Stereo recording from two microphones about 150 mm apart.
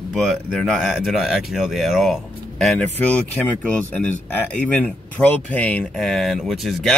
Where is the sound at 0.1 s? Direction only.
5° left (ahead or behind).